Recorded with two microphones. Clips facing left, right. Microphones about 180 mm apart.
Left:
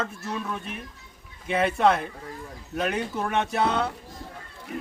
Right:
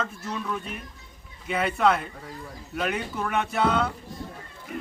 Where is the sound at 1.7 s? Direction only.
30° left (ahead or behind).